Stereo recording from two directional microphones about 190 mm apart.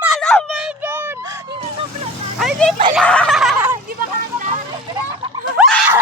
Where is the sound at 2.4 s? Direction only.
Centre (ahead or behind).